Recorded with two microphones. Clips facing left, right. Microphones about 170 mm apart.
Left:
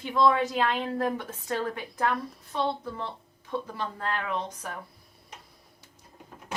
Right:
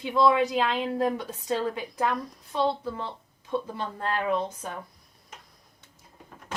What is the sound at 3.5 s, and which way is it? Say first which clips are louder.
Speech: right 2 dB; 25° right (ahead or behind).